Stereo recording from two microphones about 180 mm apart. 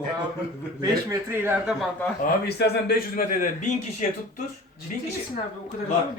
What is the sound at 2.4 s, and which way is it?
A man's voice, 65° left (ahead or behind).